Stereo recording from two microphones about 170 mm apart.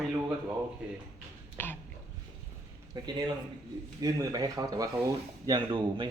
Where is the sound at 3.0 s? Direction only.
25° right (ahead or behind).